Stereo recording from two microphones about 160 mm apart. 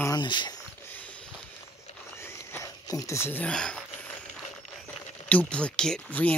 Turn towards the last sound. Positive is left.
turn(degrees=10)  # may be behind; listen again after turning